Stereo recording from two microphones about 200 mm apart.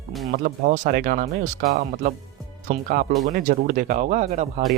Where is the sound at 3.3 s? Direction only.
45° right (ahead or behind).